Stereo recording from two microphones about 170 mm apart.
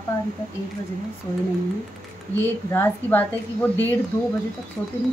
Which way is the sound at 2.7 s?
10° left (ahead or behind).